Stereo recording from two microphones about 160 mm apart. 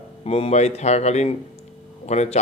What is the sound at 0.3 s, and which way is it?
Speech, 40° left (ahead or behind).